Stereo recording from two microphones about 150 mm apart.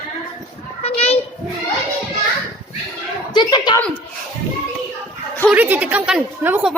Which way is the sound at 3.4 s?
30° left (ahead or behind).